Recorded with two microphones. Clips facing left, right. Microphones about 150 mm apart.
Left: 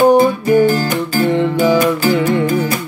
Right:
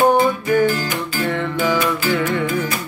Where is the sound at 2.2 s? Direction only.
25° left (ahead or behind).